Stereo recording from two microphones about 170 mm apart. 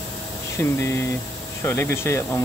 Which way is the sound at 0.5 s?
15° left (ahead or behind).